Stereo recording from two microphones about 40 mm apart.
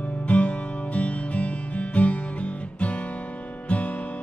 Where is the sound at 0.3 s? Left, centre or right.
Left.